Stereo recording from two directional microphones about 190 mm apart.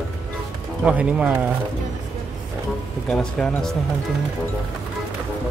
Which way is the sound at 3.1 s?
5° left (ahead or behind).